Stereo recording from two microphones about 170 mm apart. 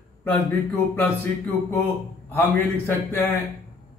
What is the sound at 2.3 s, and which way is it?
A man's voice, 10° left (ahead or behind).